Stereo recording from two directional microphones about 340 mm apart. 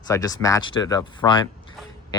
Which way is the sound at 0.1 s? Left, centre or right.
Centre.